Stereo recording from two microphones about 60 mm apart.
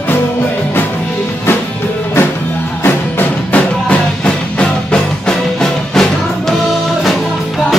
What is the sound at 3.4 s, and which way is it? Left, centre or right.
Music, left.